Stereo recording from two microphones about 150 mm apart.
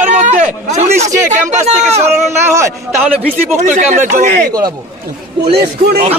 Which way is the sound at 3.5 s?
55° right (ahead or behind).